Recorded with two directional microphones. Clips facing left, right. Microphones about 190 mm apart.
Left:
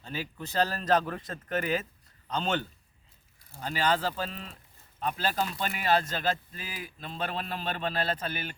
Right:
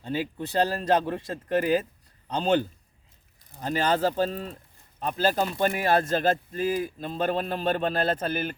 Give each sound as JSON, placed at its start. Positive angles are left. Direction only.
{"t": 0.0, "sound": "speech", "side_deg": -25}
{"t": 3.6, "sound": "speech", "side_deg": -45}